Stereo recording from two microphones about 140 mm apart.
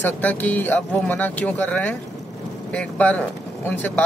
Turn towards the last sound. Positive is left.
turn(degrees=10)  # may be behind; listen again after turning